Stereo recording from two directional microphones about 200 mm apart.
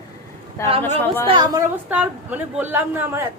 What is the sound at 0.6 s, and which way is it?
Speech, 15° left (ahead or behind).